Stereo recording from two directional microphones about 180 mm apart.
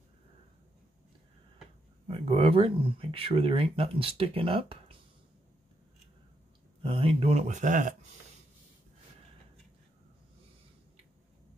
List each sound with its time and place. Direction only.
2.0 s speech: 30° right (ahead or behind)
6.8 s speech: 30° right (ahead or behind)